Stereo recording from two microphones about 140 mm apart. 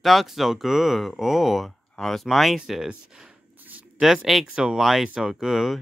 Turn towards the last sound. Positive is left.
turn(degrees=0)  # may be behind; listen again after turning